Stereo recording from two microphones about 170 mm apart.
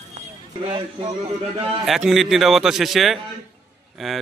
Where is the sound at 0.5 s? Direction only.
25° right (ahead or behind).